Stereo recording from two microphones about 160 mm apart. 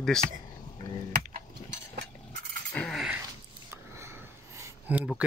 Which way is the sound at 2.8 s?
Centre (ahead or behind).